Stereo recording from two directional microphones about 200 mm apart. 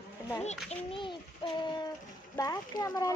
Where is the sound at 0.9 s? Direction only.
25° left (ahead or behind).